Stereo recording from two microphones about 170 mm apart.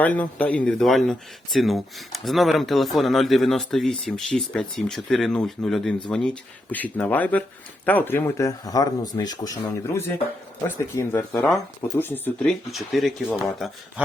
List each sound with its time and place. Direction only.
0.0 s speech: 10° left (ahead or behind)